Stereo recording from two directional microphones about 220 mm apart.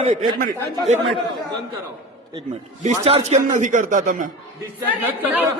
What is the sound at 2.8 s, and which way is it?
Speech, 30° right (ahead or behind).